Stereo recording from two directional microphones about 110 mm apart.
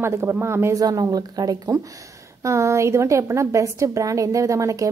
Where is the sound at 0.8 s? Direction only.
35° right (ahead or behind).